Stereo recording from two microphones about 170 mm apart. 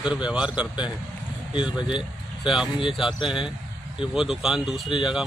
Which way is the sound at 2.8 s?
30° left (ahead or behind).